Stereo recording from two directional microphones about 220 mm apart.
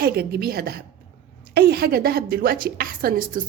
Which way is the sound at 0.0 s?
45° right (ahead or behind).